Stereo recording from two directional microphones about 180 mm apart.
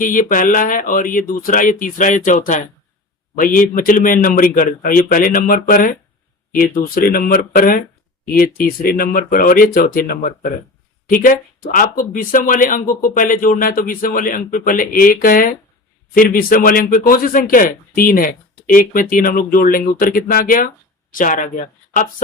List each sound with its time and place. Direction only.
0.0 s speech: 45° left (ahead or behind)